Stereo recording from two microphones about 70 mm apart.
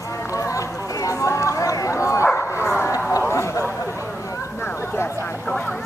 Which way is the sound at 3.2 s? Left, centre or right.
Left.